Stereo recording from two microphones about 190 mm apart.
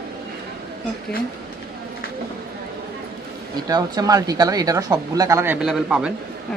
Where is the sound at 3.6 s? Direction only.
20° right (ahead or behind).